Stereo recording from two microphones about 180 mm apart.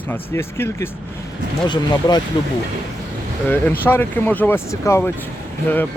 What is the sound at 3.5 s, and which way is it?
Speech, 10° left (ahead or behind).